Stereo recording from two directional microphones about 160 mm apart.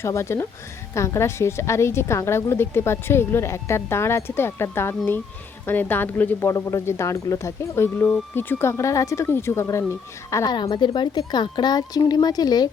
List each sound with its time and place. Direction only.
0.0 s a woman's voice: 15° left (ahead or behind)